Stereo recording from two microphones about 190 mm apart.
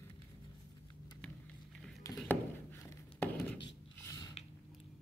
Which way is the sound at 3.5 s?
20° left (ahead or behind).